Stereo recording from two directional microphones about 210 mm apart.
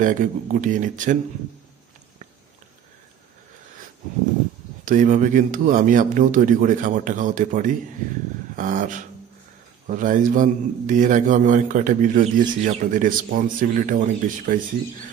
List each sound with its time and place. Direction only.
0.0 s a man's voice: 40° right (ahead or behind)
4.8 s a man's voice: 40° right (ahead or behind)